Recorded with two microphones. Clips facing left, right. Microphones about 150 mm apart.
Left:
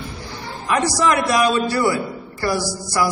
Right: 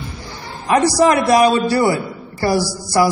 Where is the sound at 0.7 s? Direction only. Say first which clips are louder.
Right 5 dB; 35° right (ahead or behind).